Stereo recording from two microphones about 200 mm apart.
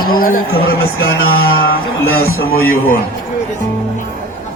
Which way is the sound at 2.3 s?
90° left.